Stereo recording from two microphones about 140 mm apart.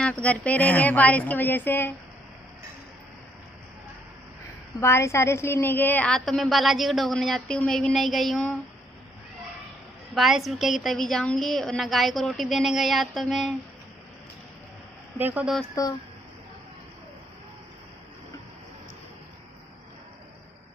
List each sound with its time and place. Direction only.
0.0 s a woman's voice: 10° left (ahead or behind)
4.7 s a woman's voice: 20° left (ahead or behind)
6.1 s a woman's voice: centre (ahead or behind)
10.1 s a woman's voice: centre (ahead or behind)
15.1 s speech: 10° right (ahead or behind)
15.7 s speech: 25° left (ahead or behind)